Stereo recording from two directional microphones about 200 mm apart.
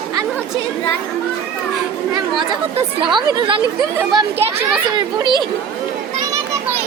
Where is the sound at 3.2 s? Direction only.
20° right (ahead or behind).